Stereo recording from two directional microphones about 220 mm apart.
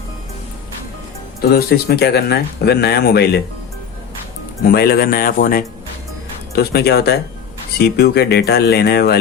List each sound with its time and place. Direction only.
1.4 s speech: 45° left (ahead or behind)
4.6 s speech: 45° left (ahead or behind)